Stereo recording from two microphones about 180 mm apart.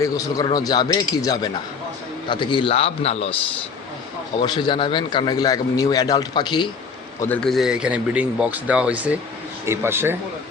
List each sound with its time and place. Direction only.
0.0 s a man's voice: 20° left (ahead or behind)
4.4 s a man's voice: 25° left (ahead or behind)
7.2 s a man's voice: 5° left (ahead or behind); by 10.2 s 15° right (ahead or behind)